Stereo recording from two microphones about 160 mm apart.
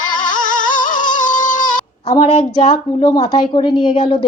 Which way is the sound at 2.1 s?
30° left (ahead or behind).